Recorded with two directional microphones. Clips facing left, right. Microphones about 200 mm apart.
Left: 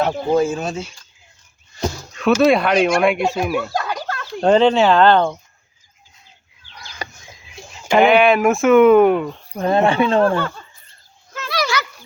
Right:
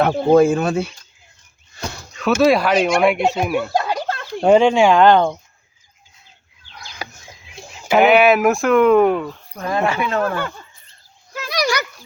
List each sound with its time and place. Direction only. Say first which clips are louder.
0.0 s speech: right 4 dB; 55° right (ahead or behind)
2.1 s speech: even; centre (ahead or behind)
3.8 s a sound: right 3 dB; 25° right (ahead or behind)
4.4 s speech: right 1 dB; 10° right (ahead or behind)
7.0 s a sound: left 1 dB; 5° right (ahead or behind)
7.9 s speech: even; 5° right (ahead or behind)
9.6 s speech: left 5 dB; 30° left (ahead or behind)
11.3 s dog: right 1 dB; 15° right (ahead or behind)